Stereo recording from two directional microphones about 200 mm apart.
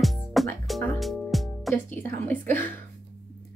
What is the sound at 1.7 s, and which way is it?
Speech, 10° left (ahead or behind).